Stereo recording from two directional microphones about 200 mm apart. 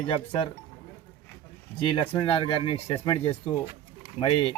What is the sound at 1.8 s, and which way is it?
Speech, 25° left (ahead or behind).